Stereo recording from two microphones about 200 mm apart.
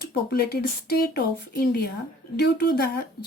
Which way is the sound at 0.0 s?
50° left (ahead or behind).